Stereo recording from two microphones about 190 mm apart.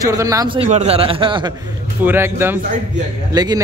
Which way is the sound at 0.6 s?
35° right (ahead or behind).